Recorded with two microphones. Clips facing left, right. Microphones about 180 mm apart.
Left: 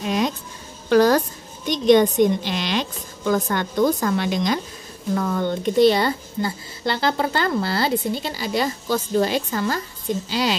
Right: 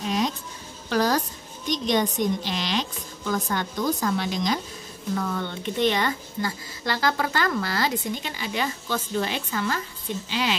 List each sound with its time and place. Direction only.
0.0 s a sound: 60° left (ahead or behind)
0.8 s a woman's voice: 60° left (ahead or behind)
5.1 s a woman's voice: 45° left (ahead or behind)